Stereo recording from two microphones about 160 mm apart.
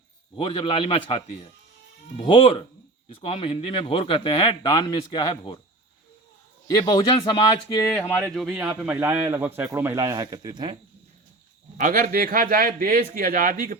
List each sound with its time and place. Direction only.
0.3 s a man's voice: 35° left (ahead or behind)
6.7 s speech: 25° left (ahead or behind)
7.9 s speech: 15° left (ahead or behind)
8.3 s speech: centre (ahead or behind); by 10.8 s 30° right (ahead or behind)
11.8 s speech: 60° right (ahead or behind)